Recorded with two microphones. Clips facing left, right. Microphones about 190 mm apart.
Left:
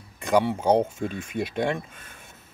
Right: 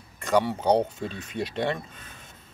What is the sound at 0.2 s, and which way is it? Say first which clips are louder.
Speech: left 2 dB; 15° left (ahead or behind).